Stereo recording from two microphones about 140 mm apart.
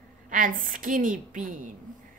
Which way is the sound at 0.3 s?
75° right (ahead or behind).